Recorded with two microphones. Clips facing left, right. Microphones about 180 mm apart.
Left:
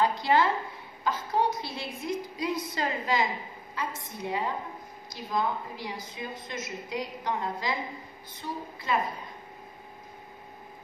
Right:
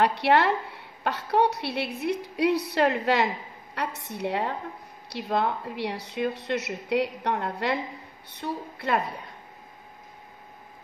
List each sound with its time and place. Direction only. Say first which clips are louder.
0.0 s a woman's voice: right 3 dB; 70° right (ahead or behind)